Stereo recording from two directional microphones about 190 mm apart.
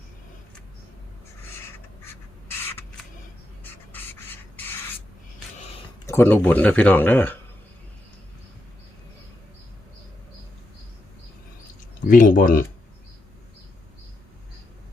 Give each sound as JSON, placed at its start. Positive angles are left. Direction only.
{"t": 2.5, "sound": "crow", "side_deg": 10}
{"t": 3.6, "sound": "a sound", "side_deg": 10}
{"t": 6.1, "sound": "speech", "side_deg": 10}
{"t": 12.0, "sound": "speech", "side_deg": 45}